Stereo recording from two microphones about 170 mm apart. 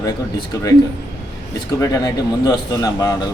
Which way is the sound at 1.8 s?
20° left (ahead or behind).